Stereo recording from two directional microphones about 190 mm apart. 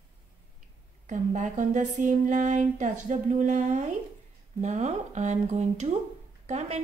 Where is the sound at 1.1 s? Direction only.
40° right (ahead or behind).